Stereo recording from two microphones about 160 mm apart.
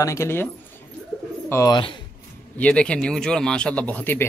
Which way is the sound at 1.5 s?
20° left (ahead or behind).